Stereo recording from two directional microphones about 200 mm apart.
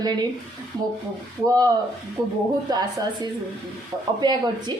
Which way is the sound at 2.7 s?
20° right (ahead or behind).